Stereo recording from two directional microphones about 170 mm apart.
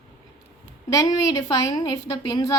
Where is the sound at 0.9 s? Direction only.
20° left (ahead or behind).